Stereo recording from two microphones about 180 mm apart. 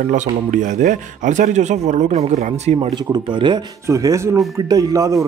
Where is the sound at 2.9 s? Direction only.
25° right (ahead or behind).